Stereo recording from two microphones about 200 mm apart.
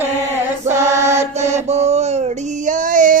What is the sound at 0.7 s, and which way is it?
Music, 15° right (ahead or behind).